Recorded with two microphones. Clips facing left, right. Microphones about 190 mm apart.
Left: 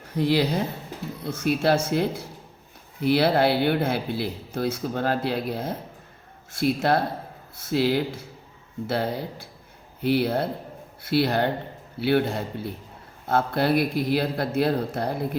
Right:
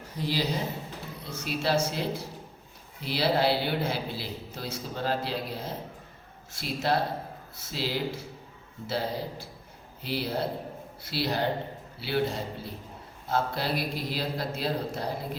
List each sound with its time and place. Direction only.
0.2 s a man's voice: 60° left (ahead or behind)